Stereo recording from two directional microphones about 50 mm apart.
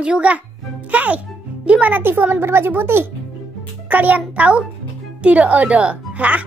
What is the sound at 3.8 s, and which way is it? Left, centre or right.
A woman's voice, right.